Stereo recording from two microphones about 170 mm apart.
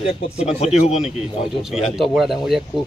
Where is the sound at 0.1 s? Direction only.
40° left (ahead or behind).